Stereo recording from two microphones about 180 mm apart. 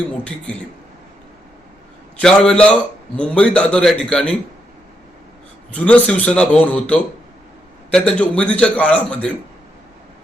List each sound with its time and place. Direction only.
2.2 s a man's voice: 5° left (ahead or behind)
5.7 s a man's voice: 5° left (ahead or behind)